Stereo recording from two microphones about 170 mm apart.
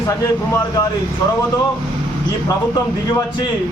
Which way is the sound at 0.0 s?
20° left (ahead or behind).